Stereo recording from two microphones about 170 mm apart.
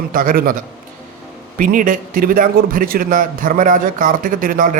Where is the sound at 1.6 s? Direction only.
50° right (ahead or behind).